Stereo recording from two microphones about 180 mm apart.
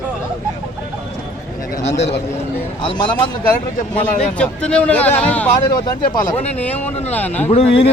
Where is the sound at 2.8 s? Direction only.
25° left (ahead or behind).